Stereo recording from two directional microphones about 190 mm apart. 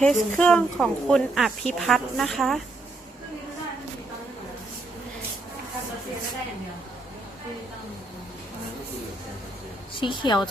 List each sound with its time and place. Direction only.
0.0 s speech: 5° left (ahead or behind)
10.0 s a woman's voice: 25° left (ahead or behind)